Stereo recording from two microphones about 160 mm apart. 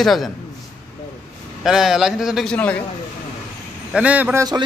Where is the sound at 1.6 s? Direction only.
5° right (ahead or behind).